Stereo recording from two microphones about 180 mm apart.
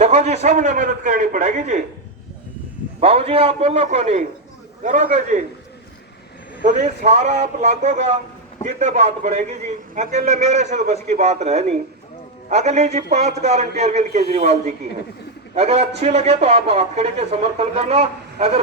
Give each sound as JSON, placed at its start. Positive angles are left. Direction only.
{"t": 0.0, "sound": "a man's voice", "side_deg": -40}
{"t": 3.0, "sound": "a man's voice", "side_deg": -35}
{"t": 6.7, "sound": "a man's voice", "side_deg": -40}